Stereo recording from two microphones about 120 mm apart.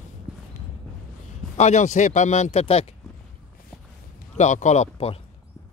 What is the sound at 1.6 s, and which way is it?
Speech, 75° left (ahead or behind).